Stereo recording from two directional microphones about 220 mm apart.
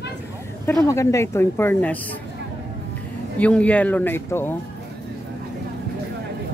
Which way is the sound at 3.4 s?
5° left (ahead or behind).